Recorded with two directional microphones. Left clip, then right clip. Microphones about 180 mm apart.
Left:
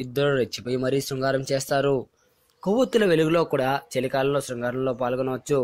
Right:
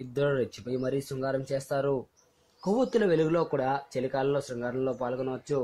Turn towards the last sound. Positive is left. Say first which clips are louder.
# left 6 dB
turn(degrees=20)  # may be behind; listen again after turning